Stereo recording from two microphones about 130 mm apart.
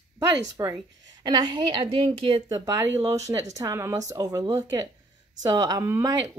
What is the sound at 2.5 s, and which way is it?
A woman's voice, 25° right (ahead or behind).